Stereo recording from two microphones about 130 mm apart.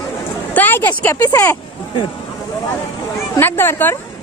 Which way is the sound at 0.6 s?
15° left (ahead or behind).